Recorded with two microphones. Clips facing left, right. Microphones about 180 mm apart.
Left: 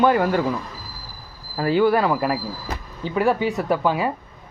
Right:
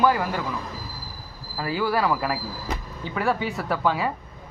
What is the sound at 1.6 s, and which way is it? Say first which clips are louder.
Speech: left 7 dB; 25° left (ahead or behind).